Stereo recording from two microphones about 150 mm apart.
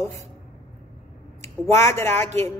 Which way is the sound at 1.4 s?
20° left (ahead or behind).